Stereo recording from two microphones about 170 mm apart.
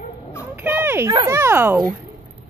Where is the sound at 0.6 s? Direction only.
10° right (ahead or behind).